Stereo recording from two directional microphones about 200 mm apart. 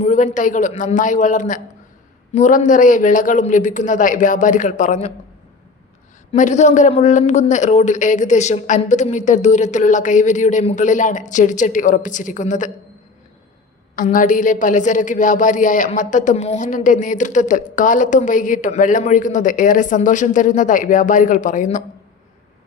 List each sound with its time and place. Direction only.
0.0 s a woman's voice: 40° left (ahead or behind)
6.3 s a woman's voice: 35° left (ahead or behind)
13.9 s a woman's voice: 40° left (ahead or behind)